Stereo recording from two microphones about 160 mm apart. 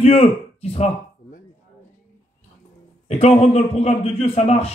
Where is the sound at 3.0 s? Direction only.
40° left (ahead or behind).